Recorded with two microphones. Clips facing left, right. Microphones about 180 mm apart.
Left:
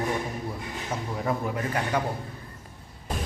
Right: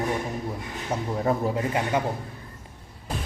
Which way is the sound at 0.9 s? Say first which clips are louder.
Right 4 dB; 30° right (ahead or behind).